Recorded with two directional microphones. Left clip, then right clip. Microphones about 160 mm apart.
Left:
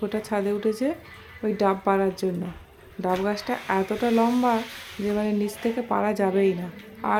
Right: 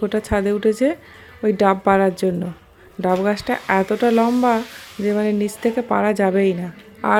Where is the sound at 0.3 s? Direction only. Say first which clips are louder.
Right 6 dB; 25° right (ahead or behind).